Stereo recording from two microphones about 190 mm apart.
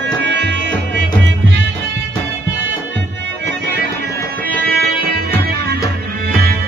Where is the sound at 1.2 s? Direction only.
70° right (ahead or behind).